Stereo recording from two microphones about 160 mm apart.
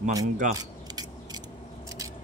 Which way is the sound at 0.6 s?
25° right (ahead or behind).